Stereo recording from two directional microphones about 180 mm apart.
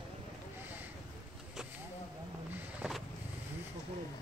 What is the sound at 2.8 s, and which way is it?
Vehicle, centre (ahead or behind).